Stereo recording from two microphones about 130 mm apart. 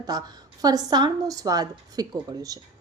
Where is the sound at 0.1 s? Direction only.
30° right (ahead or behind).